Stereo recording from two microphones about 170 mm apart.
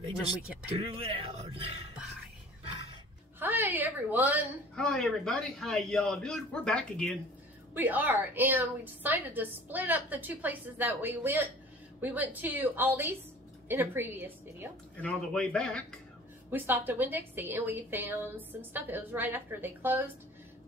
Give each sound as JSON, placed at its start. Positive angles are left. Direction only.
{"t": 0.7, "sound": "speech", "side_deg": -35}
{"t": 3.3, "sound": "a woman's voice", "side_deg": -10}
{"t": 4.7, "sound": "a man's voice", "side_deg": 5}
{"t": 7.7, "sound": "a woman's voice", "side_deg": -10}
{"t": 15.0, "sound": "a man's voice", "side_deg": 5}
{"t": 16.4, "sound": "a woman's voice", "side_deg": -10}